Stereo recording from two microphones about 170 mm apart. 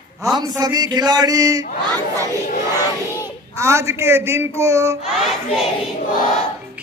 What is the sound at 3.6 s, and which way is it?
A man's voice, 15° right (ahead or behind).